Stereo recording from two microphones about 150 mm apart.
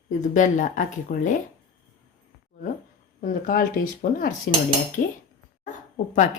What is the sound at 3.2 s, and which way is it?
Speech, 65° left (ahead or behind).